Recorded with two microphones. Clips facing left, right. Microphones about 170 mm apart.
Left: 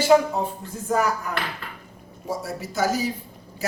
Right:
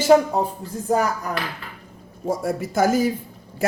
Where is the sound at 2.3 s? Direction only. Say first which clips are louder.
Right 6 dB; 50° right (ahead or behind).